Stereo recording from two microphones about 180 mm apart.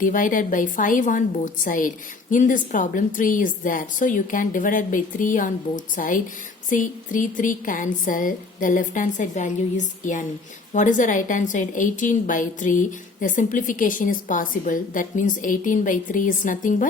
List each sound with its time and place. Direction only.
0.0 s a woman's voice: 50° left (ahead or behind)